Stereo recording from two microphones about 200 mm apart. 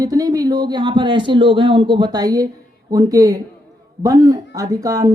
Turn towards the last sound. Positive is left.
turn(degrees=-20)  # may be behind; listen again after turning